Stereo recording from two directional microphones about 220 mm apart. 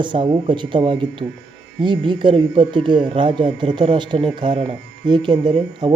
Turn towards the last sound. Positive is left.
turn(degrees=-20)  # may be behind; listen again after turning